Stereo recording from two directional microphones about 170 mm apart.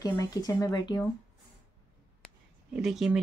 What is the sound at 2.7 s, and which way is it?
Speech, 5° right (ahead or behind).